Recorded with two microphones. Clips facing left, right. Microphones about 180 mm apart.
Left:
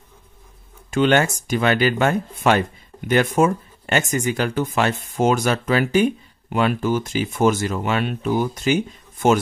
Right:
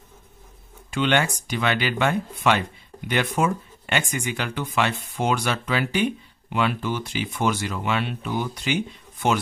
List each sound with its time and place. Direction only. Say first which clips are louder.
0.8 s speech: left 5 dB; 45° left (ahead or behind)